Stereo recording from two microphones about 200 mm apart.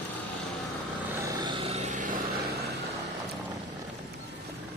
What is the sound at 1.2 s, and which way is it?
Vehicle, 20° right (ahead or behind).